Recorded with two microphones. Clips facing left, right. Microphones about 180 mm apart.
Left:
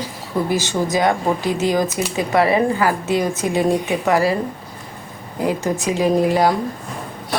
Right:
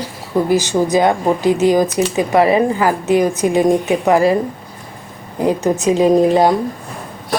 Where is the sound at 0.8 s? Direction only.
20° right (ahead or behind).